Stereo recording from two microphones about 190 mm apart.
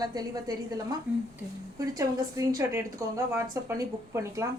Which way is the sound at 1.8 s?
15° right (ahead or behind).